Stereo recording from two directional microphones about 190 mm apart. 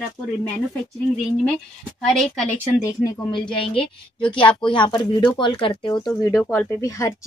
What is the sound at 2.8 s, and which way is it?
A woman's voice, 20° left (ahead or behind).